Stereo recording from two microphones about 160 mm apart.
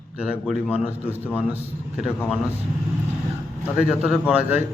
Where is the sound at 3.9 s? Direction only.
5° right (ahead or behind).